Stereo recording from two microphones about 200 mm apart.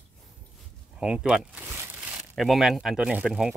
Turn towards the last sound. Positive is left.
turn(degrees=-5)  # may be behind; listen again after turning